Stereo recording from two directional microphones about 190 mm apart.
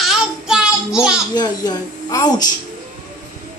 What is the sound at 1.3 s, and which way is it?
A woman's voice, 20° left (ahead or behind).